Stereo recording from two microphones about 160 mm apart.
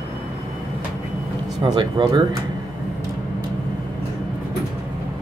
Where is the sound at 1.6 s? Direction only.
30° right (ahead or behind).